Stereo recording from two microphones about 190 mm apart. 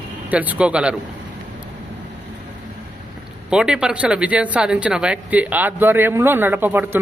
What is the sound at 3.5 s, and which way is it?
Speech, 5° right (ahead or behind).